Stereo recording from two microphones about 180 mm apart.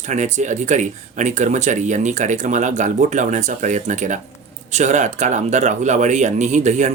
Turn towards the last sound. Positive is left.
turn(degrees=-40)  # may be behind; listen again after turning